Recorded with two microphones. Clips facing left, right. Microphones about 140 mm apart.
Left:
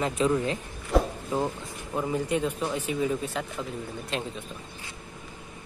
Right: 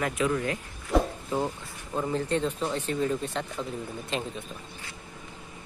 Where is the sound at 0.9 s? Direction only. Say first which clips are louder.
Left 1 dB; centre (ahead or behind).